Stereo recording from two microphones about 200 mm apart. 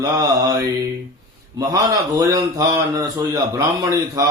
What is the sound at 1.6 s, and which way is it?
Mantra, 15° right (ahead or behind).